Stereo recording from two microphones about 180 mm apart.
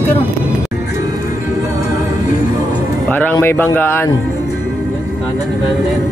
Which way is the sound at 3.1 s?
10° left (ahead or behind).